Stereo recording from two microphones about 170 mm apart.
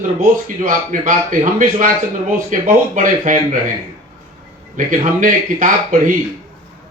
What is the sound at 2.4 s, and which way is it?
A man's voice, 50° right (ahead or behind).